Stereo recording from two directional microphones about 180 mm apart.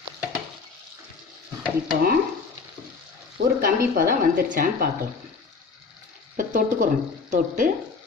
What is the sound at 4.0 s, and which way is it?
Speech, 50° right (ahead or behind).